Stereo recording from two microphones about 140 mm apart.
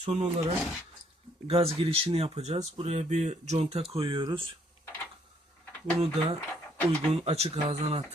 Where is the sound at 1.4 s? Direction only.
45° right (ahead or behind).